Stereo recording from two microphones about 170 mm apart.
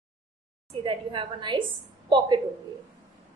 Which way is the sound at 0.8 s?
30° right (ahead or behind).